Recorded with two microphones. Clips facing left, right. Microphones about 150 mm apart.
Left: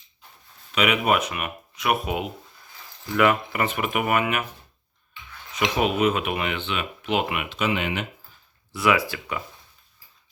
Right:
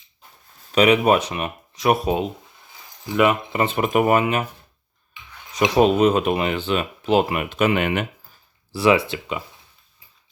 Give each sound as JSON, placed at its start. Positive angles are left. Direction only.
{"t": 0.7, "sound": "speech", "side_deg": -35}
{"t": 3.1, "sound": "speech", "side_deg": -20}
{"t": 5.7, "sound": "speech", "side_deg": -35}
{"t": 7.5, "sound": "speech", "side_deg": -55}
{"t": 8.7, "sound": "speech", "side_deg": -30}